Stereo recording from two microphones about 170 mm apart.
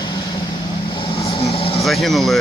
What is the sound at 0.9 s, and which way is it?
Vehicle, 30° left (ahead or behind).